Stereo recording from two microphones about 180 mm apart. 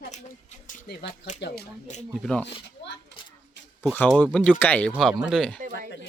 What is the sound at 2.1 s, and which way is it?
Speech, 5° left (ahead or behind).